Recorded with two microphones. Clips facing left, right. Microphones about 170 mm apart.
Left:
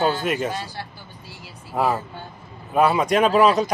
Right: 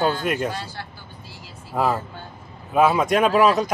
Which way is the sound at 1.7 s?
Centre (ahead or behind).